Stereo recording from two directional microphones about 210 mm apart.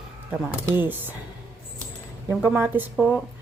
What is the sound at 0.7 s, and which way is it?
Speech, 10° right (ahead or behind).